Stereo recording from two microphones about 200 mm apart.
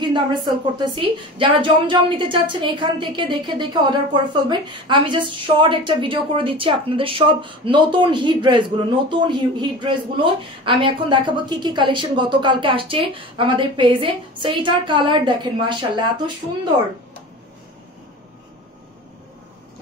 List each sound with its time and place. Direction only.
0.0 s a woman's voice: 20° right (ahead or behind)